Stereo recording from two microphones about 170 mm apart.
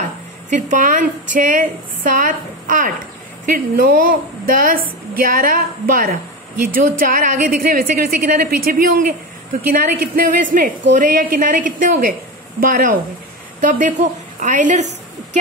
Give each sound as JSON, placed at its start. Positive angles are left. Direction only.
{"t": 0.5, "sound": "a woman's voice", "side_deg": -45}